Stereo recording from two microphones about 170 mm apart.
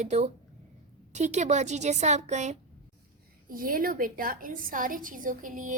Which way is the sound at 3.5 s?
55° right (ahead or behind).